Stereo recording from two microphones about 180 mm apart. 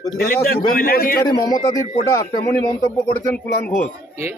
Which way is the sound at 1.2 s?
20° left (ahead or behind).